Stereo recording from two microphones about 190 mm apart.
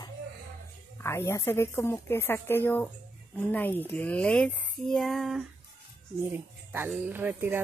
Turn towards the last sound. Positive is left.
turn(degrees=-10)  # may be behind; listen again after turning